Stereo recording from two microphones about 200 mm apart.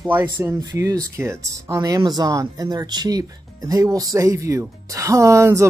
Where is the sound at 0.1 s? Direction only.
10° right (ahead or behind).